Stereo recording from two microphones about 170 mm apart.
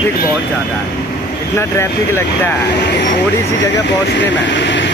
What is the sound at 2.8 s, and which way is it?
Speech, 90° left.